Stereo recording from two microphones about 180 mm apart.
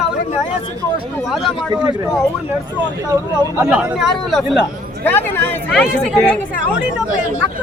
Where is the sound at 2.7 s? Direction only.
15° right (ahead or behind).